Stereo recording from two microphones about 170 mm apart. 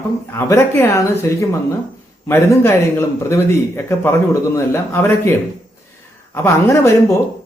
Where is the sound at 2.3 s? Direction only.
15° left (ahead or behind).